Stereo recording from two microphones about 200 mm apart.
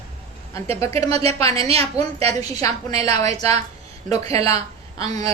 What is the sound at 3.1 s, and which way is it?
Speech, 30° right (ahead or behind).